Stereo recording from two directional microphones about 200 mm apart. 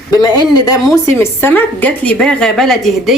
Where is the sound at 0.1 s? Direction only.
20° left (ahead or behind).